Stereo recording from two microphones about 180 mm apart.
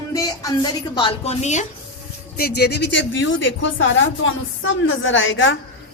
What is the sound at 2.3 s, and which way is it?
Speech, 60° left (ahead or behind).